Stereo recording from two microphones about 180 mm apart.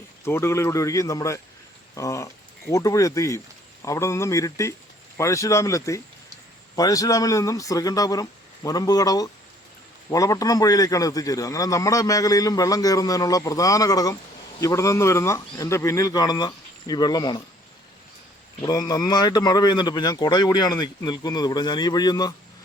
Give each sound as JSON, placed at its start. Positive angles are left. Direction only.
{"t": 0.3, "sound": "a man's voice", "side_deg": 15}
{"t": 18.6, "sound": "a man's voice", "side_deg": 20}